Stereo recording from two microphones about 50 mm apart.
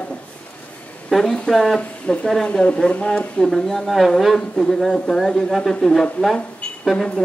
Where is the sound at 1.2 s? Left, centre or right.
Centre.